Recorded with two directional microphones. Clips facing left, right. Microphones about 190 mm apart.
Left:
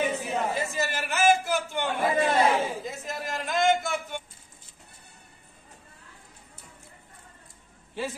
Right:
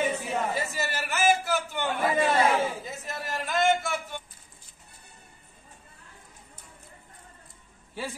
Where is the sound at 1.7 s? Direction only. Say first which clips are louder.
Left 1 dB; 25° left (ahead or behind).